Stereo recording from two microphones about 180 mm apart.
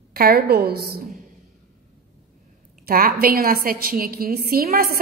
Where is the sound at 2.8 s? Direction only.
55° right (ahead or behind).